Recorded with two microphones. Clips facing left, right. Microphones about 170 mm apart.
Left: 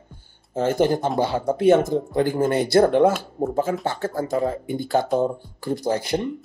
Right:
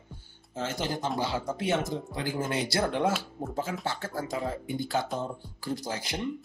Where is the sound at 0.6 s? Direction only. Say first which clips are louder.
Left 12 dB; 55° left (ahead or behind).